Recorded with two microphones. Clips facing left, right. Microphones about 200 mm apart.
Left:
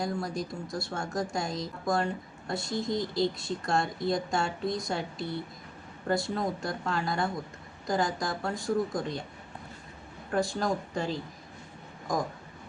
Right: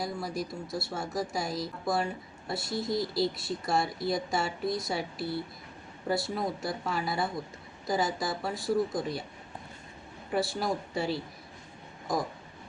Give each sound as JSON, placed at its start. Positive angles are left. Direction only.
{"t": 0.0, "sound": "speech", "side_deg": -5}
{"t": 10.5, "sound": "speech", "side_deg": -10}